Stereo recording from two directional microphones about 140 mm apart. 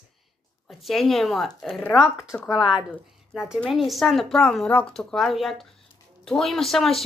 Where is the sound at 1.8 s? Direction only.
20° left (ahead or behind).